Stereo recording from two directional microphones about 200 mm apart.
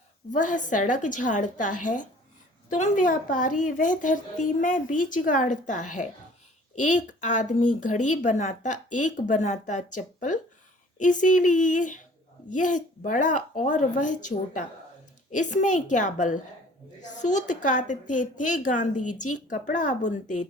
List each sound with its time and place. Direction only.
0.3 s a woman's voice: 40° left (ahead or behind)